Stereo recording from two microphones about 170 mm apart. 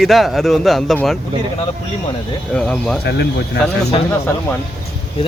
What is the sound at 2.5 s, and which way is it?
Speech, 5° left (ahead or behind).